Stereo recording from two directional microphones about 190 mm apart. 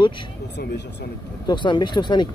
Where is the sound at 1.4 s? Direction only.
25° left (ahead or behind).